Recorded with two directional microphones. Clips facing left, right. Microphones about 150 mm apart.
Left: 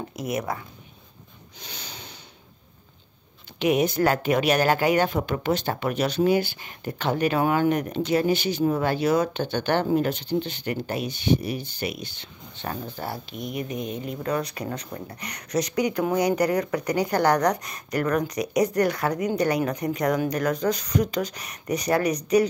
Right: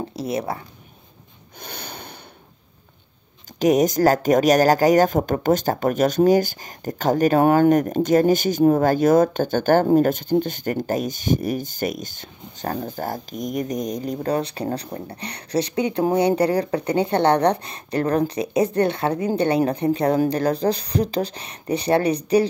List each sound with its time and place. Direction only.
0.1 s speech: 30° right (ahead or behind)
1.6 s snort: 55° right (ahead or behind)
3.5 s speech: 40° right (ahead or behind)